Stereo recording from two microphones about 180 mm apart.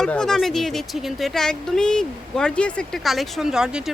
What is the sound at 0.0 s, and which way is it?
Speech, 5° left (ahead or behind).